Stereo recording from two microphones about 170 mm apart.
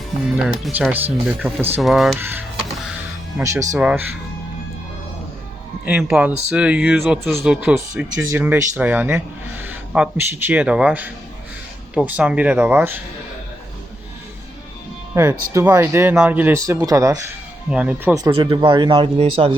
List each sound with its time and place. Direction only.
0.6 s speech: 10° right (ahead or behind)
2.1 s speech: 10° right (ahead or behind)
5.8 s speech: 5° right (ahead or behind)
15.1 s speech: 15° right (ahead or behind)
17.7 s speech: 10° right (ahead or behind)
18.3 s speech: 30° right (ahead or behind)